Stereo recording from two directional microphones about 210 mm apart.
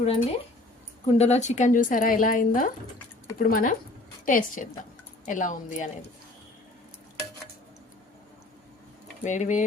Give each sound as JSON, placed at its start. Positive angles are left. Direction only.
{"t": 0.0, "sound": "speech", "side_deg": 30}
{"t": 9.2, "sound": "speech", "side_deg": 35}